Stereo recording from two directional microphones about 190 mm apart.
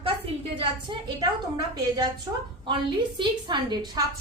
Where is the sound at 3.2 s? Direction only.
25° right (ahead or behind).